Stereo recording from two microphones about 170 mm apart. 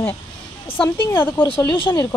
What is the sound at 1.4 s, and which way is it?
Speech, 30° left (ahead or behind).